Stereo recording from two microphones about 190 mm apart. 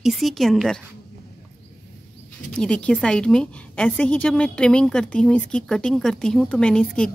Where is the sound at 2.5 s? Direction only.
5° left (ahead or behind).